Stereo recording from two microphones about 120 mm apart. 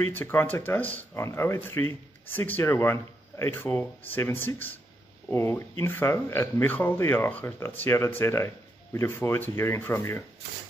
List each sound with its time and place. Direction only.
0.0 s speech: 15° left (ahead or behind)